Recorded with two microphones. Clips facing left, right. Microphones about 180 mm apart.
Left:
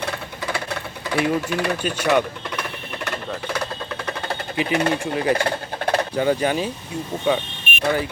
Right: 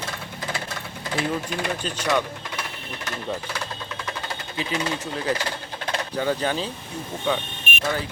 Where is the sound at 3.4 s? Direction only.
60° left (ahead or behind).